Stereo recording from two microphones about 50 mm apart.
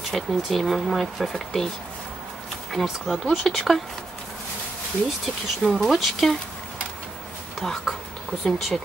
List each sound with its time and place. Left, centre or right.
0.1 s speech: centre
2.7 s speech: centre
5.2 s speech: centre
7.6 s speech: centre
8.5 s speech: centre